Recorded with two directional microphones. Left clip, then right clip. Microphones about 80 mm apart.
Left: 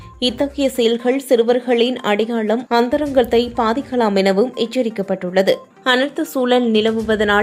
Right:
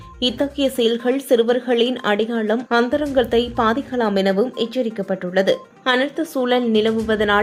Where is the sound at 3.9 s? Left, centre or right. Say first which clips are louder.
Left 3 dB; left.